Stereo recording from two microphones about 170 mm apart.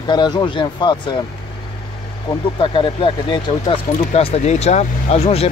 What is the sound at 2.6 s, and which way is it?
Speech, 30° left (ahead or behind).